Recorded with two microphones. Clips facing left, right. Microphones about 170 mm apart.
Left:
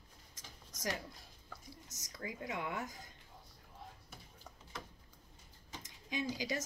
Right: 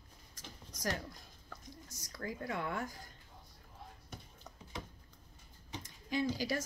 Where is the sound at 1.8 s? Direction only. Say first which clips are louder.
Right 3 dB; 20° left (ahead or behind).